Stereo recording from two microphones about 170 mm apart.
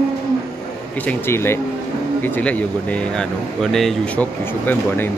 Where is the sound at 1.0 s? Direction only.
15° left (ahead or behind).